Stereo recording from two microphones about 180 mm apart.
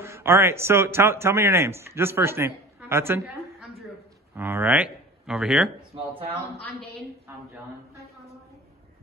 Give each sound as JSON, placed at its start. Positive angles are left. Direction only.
{"t": 0.0, "sound": "a man's voice", "side_deg": -15}
{"t": 4.4, "sound": "speech", "side_deg": -10}
{"t": 5.9, "sound": "speech", "side_deg": -30}